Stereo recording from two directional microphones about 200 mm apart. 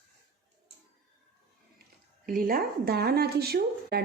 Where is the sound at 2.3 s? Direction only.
45° right (ahead or behind).